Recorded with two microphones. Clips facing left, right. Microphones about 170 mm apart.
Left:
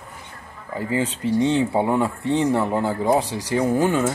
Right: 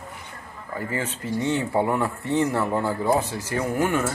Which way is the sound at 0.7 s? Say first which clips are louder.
Left 5 dB; 15° left (ahead or behind).